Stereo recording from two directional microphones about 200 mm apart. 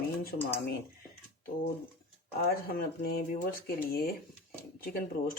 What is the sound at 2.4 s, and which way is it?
Speech, 45° left (ahead or behind).